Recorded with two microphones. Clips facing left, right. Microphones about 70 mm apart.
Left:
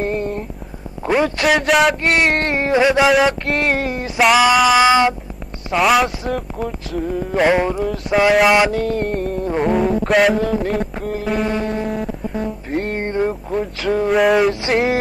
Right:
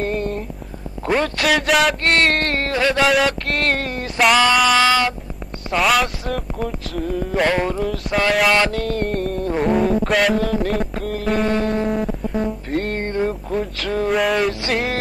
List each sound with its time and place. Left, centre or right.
0.0 s a sound: centre
1.0 s speech: centre
2.0 s music: centre
3.1 s music: centre
5.7 s speech: centre
7.3 s music: centre
11.2 s speech: centre
12.7 s music: centre
13.0 s a sound: centre